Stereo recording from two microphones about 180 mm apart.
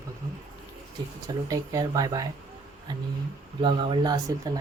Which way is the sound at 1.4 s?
20° right (ahead or behind).